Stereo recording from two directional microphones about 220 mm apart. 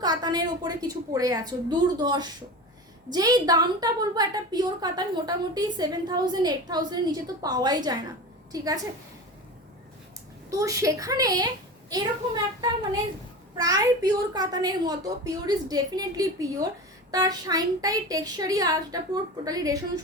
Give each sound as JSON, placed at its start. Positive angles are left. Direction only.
{"t": 0.0, "sound": "a woman's voice", "side_deg": -20}
{"t": 10.6, "sound": "a woman's voice", "side_deg": -15}